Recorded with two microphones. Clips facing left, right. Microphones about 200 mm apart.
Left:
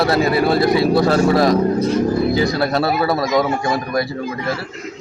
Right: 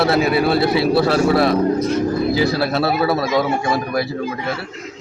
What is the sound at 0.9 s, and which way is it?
A man's voice, 5° right (ahead or behind).